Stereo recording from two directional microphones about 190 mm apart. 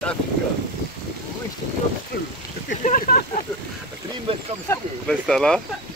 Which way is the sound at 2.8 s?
45° left (ahead or behind).